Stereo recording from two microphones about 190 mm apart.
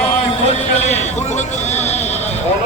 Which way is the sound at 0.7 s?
35° left (ahead or behind).